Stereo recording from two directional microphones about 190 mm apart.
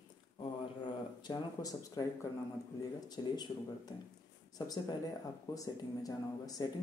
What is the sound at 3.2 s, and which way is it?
Speech, 25° left (ahead or behind).